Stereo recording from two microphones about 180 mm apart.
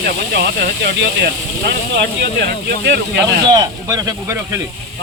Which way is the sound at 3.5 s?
20° right (ahead or behind).